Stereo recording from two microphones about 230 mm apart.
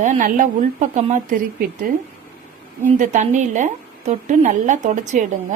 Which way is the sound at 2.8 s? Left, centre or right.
Right.